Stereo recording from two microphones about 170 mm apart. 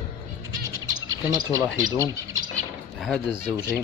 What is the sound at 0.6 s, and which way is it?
Bird, 20° right (ahead or behind).